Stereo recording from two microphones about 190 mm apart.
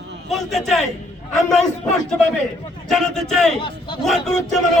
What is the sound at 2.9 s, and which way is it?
Speech, centre (ahead or behind).